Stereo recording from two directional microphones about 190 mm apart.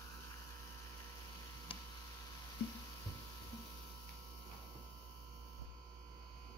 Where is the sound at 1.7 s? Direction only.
25° left (ahead or behind).